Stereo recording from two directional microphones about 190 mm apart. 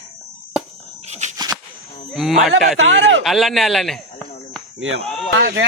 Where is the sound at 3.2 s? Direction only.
Centre (ahead or behind).